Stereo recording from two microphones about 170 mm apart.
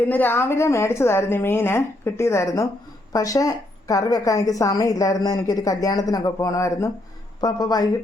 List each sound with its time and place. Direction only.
0.0 s a woman's voice: 10° left (ahead or behind)